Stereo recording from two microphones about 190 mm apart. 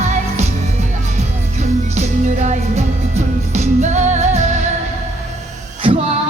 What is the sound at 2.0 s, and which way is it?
Music, 35° right (ahead or behind).